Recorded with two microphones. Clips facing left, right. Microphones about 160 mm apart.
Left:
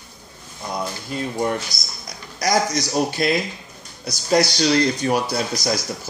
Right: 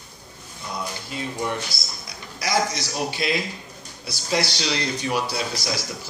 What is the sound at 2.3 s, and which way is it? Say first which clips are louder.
Speech: left 4 dB; 40° left (ahead or behind).